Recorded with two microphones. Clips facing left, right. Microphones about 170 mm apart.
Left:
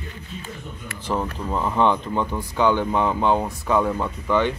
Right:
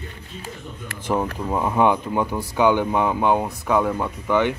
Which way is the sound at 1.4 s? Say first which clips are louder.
Even; 15° right (ahead or behind).